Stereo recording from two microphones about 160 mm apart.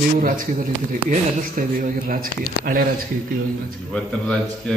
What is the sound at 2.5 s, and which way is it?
Speech, 60° left (ahead or behind).